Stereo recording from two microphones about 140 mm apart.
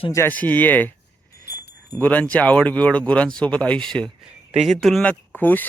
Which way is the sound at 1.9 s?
10° left (ahead or behind).